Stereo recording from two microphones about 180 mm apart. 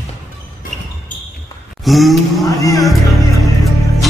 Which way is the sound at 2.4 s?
15° left (ahead or behind).